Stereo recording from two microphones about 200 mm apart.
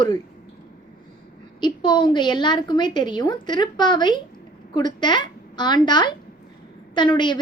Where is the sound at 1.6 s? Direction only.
25° left (ahead or behind).